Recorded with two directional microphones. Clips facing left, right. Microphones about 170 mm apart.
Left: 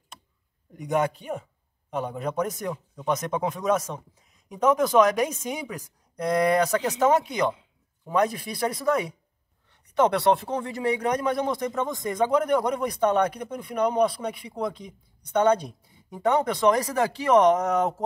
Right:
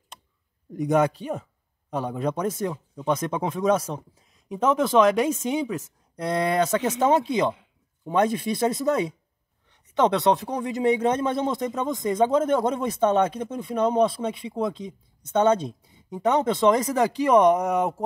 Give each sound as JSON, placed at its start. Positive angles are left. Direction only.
{"t": 0.7, "sound": "a man's voice", "side_deg": -35}